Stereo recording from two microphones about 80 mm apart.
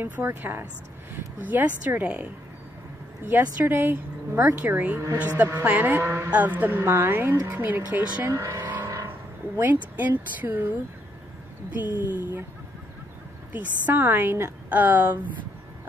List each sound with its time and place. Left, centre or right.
0.0 s speech: right
3.3 s speech: right
8.5 s vehicle: right
9.6 s speech: right
13.5 s speech: right